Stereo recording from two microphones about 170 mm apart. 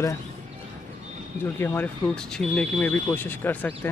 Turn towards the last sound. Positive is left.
turn(degrees=10)  # may be behind; listen again after turning